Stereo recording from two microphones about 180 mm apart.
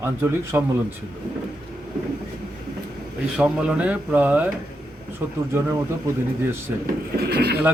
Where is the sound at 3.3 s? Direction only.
5° right (ahead or behind).